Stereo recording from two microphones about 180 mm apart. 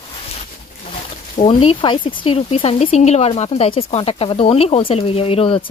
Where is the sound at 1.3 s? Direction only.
30° left (ahead or behind).